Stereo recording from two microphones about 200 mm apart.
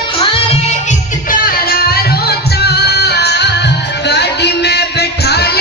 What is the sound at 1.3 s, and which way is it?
Music, 45° left (ahead or behind).